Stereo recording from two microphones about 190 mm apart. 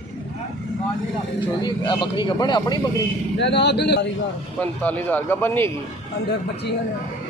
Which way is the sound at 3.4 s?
65° left (ahead or behind).